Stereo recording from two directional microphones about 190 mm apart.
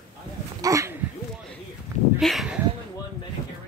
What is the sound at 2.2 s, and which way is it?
Speech, centre (ahead or behind).